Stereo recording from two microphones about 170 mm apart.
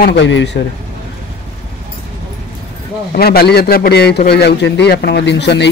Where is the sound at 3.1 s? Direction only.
65° left (ahead or behind).